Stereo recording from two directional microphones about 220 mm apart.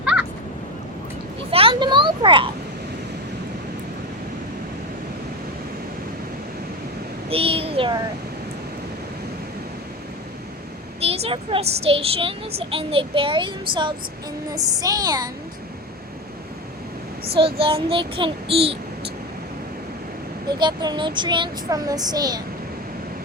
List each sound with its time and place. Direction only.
0.0 s a sound: 5° right (ahead or behind)
1.5 s a child's voice: 25° right (ahead or behind)
7.3 s a child's voice: 25° right (ahead or behind)
11.0 s a child's voice: 25° right (ahead or behind)
17.2 s child singing: 25° right (ahead or behind)
20.6 s a child's voice: 20° right (ahead or behind)